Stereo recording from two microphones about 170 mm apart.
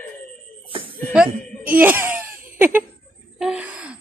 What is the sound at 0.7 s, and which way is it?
Chuckle, 30° right (ahead or behind).